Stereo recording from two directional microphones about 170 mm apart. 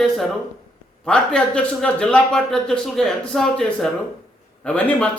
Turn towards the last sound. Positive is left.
turn(degrees=5)  # may be behind; listen again after turning